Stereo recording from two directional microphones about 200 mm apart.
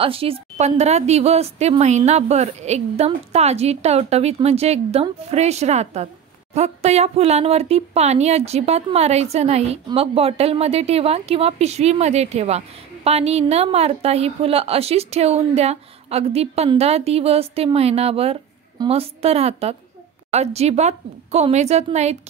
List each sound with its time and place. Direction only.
0.0 s a woman's voice: 30° right (ahead or behind)